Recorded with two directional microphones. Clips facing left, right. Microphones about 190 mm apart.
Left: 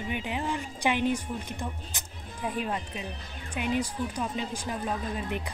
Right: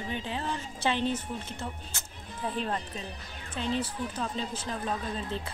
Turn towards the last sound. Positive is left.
turn(degrees=15)  # may be behind; listen again after turning